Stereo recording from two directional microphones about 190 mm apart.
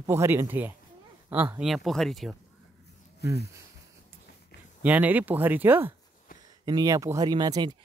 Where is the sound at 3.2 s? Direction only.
60° left (ahead or behind).